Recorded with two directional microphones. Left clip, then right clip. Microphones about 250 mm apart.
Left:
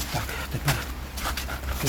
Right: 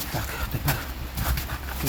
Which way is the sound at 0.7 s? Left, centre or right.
Centre.